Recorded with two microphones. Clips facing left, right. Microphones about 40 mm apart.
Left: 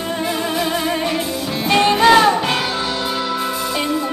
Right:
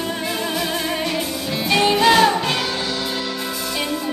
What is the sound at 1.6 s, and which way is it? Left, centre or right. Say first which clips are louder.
Music: left 3 dB; centre.